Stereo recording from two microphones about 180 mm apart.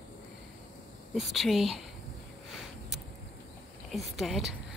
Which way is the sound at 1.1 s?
Centre (ahead or behind).